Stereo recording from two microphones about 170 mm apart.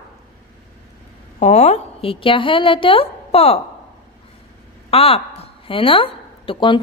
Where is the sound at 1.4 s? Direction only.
40° left (ahead or behind).